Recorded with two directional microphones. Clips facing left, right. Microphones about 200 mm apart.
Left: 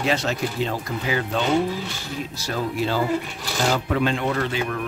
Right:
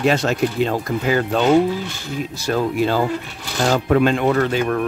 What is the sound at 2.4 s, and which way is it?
Speech, 50° right (ahead or behind).